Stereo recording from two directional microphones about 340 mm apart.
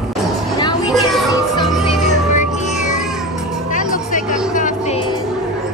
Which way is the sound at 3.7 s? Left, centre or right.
Left.